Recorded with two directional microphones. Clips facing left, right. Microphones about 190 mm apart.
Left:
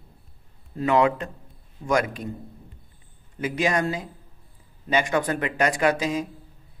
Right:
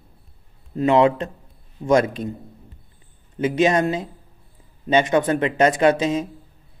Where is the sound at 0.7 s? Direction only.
25° right (ahead or behind).